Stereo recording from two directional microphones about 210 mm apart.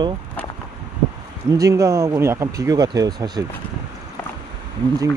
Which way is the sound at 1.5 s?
15° right (ahead or behind).